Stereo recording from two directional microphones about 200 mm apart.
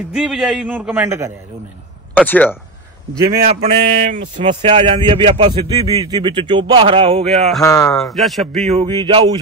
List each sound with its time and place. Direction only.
0.1 s a man's voice: centre (ahead or behind)
2.1 s speech: 10° left (ahead or behind)
3.6 s speech: 30° right (ahead or behind)
7.6 s speech: 15° left (ahead or behind)
7.9 s a man's voice: centre (ahead or behind)
8.7 s speech: 25° right (ahead or behind)